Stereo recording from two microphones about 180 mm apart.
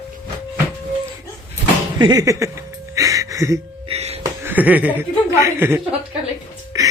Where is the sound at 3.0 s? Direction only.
20° right (ahead or behind).